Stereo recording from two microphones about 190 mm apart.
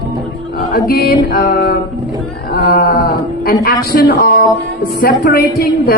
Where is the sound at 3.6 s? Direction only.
50° left (ahead or behind).